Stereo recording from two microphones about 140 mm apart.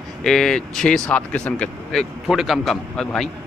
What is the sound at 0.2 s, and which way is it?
Speech, 5° left (ahead or behind).